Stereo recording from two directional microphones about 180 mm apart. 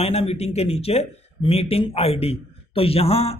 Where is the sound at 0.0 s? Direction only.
35° left (ahead or behind).